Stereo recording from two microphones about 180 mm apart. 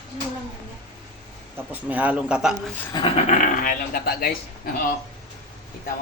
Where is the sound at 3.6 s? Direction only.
50° left (ahead or behind).